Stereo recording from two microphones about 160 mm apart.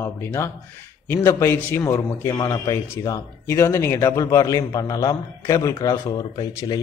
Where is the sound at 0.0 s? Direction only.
15° left (ahead or behind).